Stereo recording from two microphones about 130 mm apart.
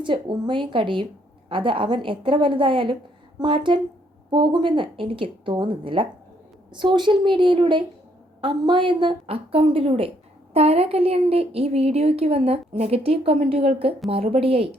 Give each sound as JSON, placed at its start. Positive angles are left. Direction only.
{"t": 0.0, "sound": "a woman's voice", "side_deg": -40}